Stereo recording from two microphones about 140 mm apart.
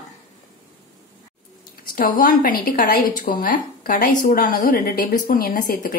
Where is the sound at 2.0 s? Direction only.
85° left.